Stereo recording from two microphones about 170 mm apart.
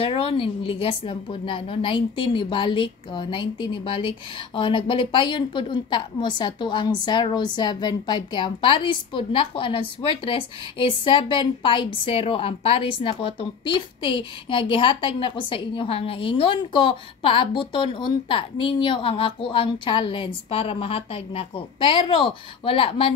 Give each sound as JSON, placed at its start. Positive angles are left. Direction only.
{"t": 0.0, "sound": "a woman's voice", "side_deg": 35}